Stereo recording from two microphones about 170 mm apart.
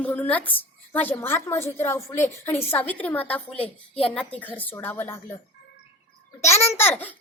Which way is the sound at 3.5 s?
35° left (ahead or behind).